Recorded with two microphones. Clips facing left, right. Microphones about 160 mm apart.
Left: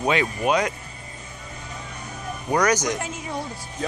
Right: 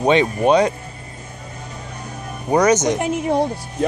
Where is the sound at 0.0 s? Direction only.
30° right (ahead or behind).